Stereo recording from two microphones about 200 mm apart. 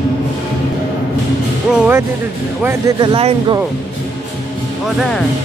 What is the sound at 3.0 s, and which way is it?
Speech, 25° right (ahead or behind).